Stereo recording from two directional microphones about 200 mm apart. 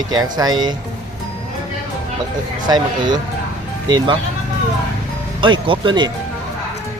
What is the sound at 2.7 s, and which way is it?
Speech, 20° right (ahead or behind).